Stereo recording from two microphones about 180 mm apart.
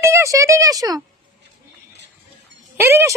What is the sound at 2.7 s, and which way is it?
Speech, 15° right (ahead or behind).